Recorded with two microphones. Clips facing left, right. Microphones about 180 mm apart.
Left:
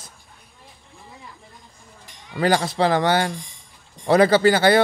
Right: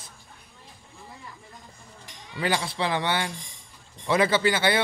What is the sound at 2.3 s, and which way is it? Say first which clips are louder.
A man's voice: left 7 dB; 40° left (ahead or behind).